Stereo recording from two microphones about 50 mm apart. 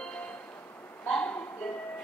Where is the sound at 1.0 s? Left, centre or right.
Left.